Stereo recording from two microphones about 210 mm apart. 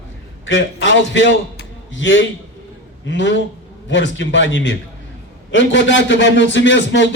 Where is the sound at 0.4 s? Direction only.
60° left (ahead or behind).